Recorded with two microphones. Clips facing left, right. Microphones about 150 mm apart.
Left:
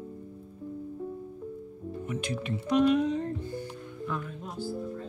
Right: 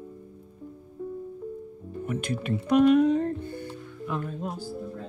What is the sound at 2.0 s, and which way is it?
Speech, 55° right (ahead or behind).